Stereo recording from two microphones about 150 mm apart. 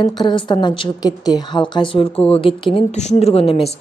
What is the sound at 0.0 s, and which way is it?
A woman's voice, 30° left (ahead or behind).